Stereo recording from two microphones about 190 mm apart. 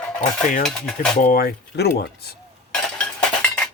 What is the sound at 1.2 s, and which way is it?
Speech, 50° left (ahead or behind).